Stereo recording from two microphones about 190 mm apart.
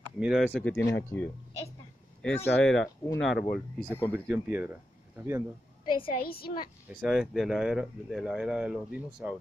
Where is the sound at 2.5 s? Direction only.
75° left (ahead or behind).